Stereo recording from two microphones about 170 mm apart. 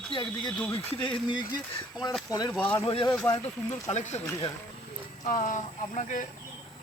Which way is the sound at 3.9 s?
40° left (ahead or behind).